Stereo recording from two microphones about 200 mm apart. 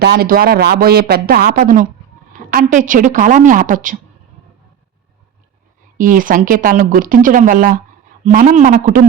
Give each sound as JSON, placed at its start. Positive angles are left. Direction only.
{"t": 0.0, "sound": "a woman's voice", "side_deg": -55}
{"t": 6.0, "sound": "a woman's voice", "side_deg": -45}